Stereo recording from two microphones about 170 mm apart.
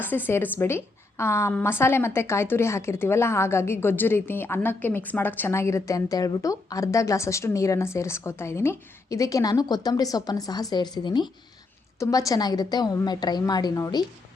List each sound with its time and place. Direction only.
0.0 s a woman's voice: 10° left (ahead or behind)